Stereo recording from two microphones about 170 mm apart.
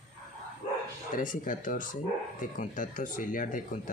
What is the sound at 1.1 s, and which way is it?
Speech, 50° left (ahead or behind).